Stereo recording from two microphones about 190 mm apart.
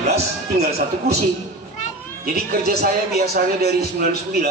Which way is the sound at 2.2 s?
50° right (ahead or behind).